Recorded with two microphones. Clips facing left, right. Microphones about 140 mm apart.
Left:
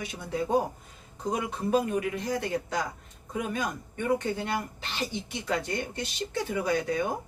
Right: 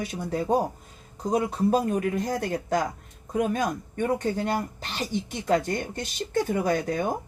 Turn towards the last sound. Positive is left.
turn(degrees=-50)  # may be behind; listen again after turning